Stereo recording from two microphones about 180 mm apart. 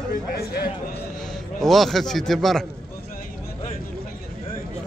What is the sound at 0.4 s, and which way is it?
Speech, 60° left (ahead or behind).